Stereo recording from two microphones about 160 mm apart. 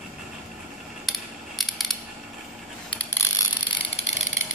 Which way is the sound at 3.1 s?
15° left (ahead or behind).